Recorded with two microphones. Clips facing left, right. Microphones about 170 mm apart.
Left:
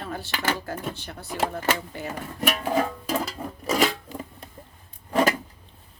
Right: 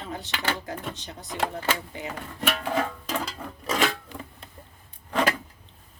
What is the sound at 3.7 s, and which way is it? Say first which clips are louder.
Filing: left 3 dB; 10° left (ahead or behind).